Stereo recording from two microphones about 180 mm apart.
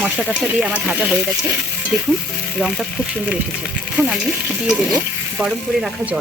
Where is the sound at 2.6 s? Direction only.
Centre (ahead or behind).